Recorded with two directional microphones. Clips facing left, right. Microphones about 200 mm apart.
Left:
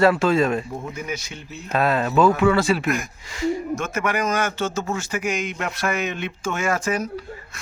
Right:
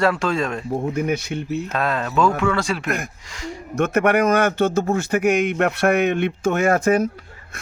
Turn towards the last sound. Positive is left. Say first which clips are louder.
# right 6 dB
turn(degrees=-55)  # may be behind; listen again after turning